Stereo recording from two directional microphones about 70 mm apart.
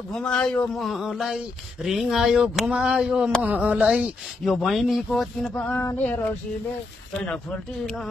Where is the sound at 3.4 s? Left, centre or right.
Right.